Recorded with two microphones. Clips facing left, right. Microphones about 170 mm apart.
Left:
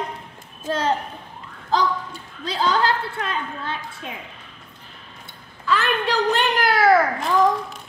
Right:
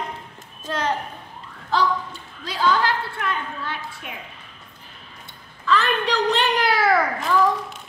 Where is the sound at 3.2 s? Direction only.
25° left (ahead or behind).